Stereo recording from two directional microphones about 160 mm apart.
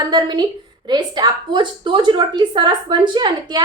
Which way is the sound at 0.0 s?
25° right (ahead or behind).